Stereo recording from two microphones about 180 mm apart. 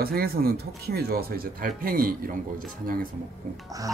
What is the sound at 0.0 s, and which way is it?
Speech, 60° right (ahead or behind).